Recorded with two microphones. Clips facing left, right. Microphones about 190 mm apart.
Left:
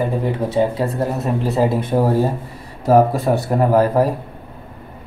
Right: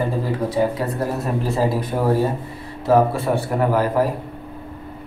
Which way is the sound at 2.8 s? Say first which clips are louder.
Left 3 dB; 40° left (ahead or behind).